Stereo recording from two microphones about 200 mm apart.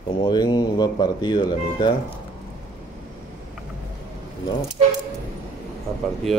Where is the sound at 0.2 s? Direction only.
20° left (ahead or behind).